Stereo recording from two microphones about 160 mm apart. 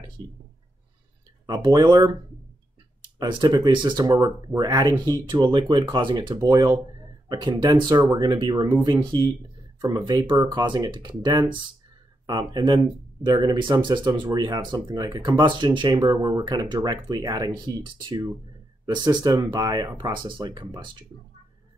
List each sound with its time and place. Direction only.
1.4 s speech: 25° right (ahead or behind)
3.2 s speech: 25° right (ahead or behind)